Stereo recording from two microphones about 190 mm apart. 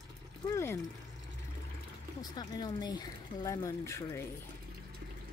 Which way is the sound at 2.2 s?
20° left (ahead or behind).